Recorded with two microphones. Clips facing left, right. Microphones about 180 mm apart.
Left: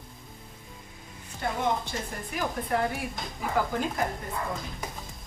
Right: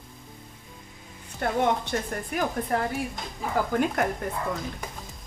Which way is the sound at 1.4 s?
60° right (ahead or behind).